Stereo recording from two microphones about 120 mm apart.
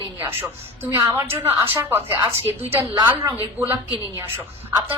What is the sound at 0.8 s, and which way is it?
A woman's voice, 20° right (ahead or behind).